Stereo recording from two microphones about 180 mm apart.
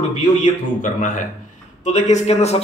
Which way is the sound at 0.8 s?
45° left (ahead or behind).